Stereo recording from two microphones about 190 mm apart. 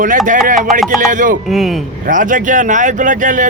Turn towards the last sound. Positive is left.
turn(degrees=-40)  # may be behind; listen again after turning